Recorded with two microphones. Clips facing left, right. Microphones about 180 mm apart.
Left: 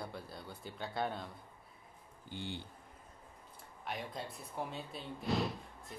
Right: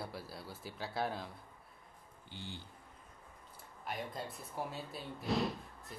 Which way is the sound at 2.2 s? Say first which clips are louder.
Left 5 dB; 55° left (ahead or behind).